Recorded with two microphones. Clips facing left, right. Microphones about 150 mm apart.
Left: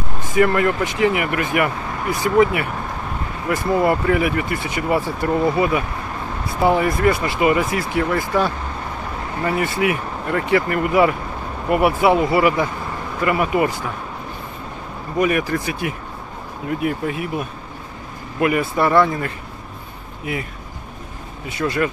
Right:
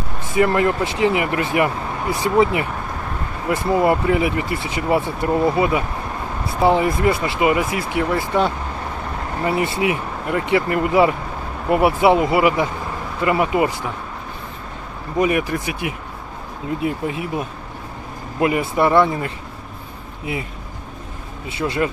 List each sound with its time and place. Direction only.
0.3 s speech: 20° right (ahead or behind)
15.1 s speech: 20° right (ahead or behind)
21.5 s speech: 25° right (ahead or behind)